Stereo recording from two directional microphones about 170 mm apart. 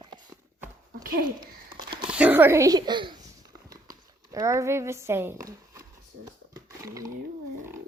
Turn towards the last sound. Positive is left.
turn(degrees=-20)  # may be behind; listen again after turning